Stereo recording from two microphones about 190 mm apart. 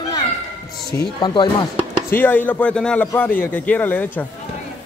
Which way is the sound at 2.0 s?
10° left (ahead or behind).